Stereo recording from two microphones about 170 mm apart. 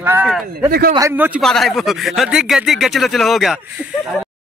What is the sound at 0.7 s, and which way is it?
Speech, 60° right (ahead or behind).